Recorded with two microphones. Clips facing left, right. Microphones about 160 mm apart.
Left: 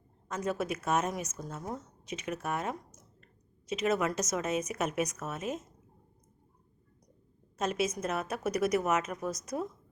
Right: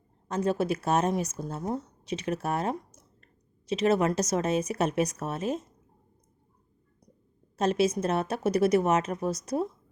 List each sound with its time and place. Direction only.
0.3 s speech: 30° right (ahead or behind)
7.6 s speech: 30° right (ahead or behind)